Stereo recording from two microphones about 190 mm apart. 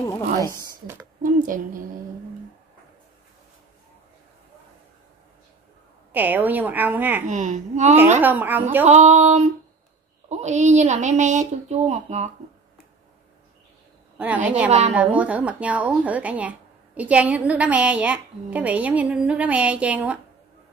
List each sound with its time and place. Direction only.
0.0 s speech: 15° left (ahead or behind)
0.6 s speech: 15° right (ahead or behind)
1.2 s speech: 45° right (ahead or behind)
6.1 s speech: 10° right (ahead or behind)
7.2 s a woman's voice: 40° right (ahead or behind)
8.2 s speech: 10° right (ahead or behind)
8.8 s a woman's voice: 35° right (ahead or behind)
14.1 s a woman's voice: 10° right (ahead or behind)